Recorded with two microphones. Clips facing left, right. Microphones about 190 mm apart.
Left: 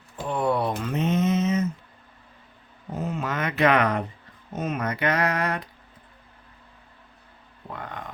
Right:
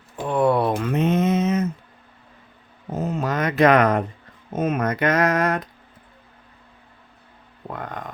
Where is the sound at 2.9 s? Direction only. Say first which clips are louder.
Right 5 dB; 40° right (ahead or behind).